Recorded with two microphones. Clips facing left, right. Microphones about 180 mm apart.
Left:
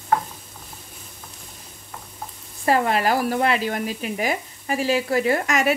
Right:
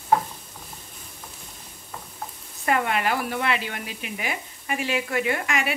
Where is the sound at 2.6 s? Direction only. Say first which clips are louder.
Left 4 dB; 35° left (ahead or behind).